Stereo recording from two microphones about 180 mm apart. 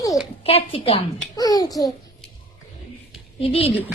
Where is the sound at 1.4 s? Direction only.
20° left (ahead or behind).